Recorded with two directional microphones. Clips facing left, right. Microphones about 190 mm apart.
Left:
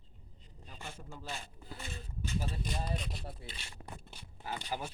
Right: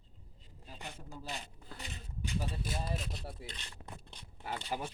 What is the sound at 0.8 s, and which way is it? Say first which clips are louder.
Rub: even; 15° right (ahead or behind).